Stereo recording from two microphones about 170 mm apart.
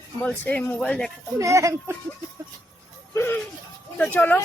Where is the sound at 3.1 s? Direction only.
15° left (ahead or behind).